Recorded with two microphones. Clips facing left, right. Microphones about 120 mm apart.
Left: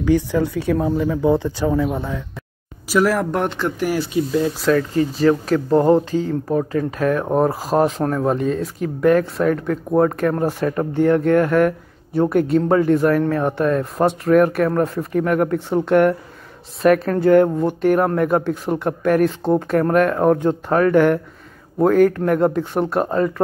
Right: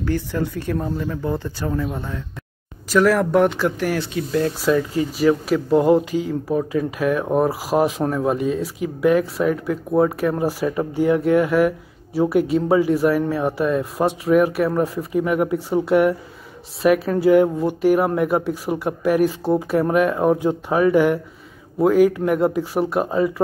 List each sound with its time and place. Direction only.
0.0 s speech: 10° left (ahead or behind)
4.7 s speech: 15° right (ahead or behind)
7.0 s speech: 40° left (ahead or behind)
7.4 s speech: 5° right (ahead or behind)
10.3 s speech: 5° right (ahead or behind)